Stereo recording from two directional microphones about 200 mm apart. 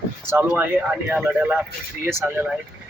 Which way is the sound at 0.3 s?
10° right (ahead or behind).